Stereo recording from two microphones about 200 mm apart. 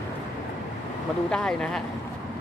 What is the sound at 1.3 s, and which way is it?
Speech, 5° left (ahead or behind).